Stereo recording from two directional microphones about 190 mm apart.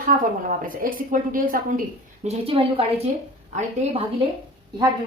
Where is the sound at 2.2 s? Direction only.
30° right (ahead or behind).